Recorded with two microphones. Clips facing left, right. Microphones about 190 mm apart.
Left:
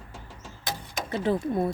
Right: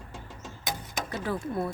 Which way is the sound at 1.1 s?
25° left (ahead or behind).